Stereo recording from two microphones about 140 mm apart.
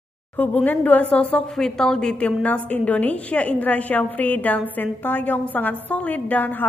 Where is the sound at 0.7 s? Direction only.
10° left (ahead or behind).